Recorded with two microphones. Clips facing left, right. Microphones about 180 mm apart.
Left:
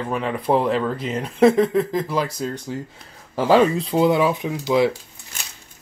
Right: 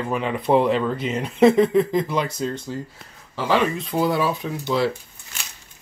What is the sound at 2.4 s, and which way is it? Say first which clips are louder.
Speech: even; 15° left (ahead or behind).